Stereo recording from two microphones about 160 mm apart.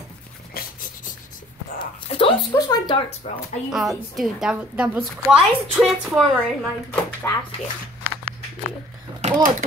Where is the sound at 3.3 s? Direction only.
40° left (ahead or behind).